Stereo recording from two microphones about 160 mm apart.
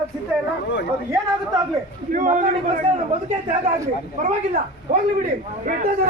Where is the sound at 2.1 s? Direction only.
50° right (ahead or behind).